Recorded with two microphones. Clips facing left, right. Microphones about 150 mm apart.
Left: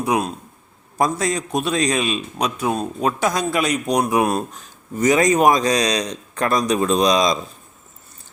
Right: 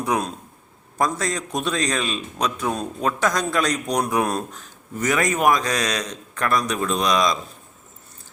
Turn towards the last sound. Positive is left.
turn(degrees=20)  # may be behind; listen again after turning